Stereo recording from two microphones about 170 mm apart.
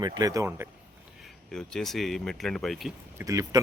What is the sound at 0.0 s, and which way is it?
Speech, 20° right (ahead or behind).